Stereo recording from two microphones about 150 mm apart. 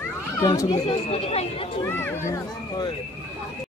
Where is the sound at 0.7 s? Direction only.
40° left (ahead or behind).